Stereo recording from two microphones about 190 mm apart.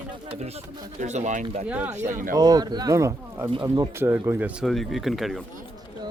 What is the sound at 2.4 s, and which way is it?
Speech, 20° right (ahead or behind).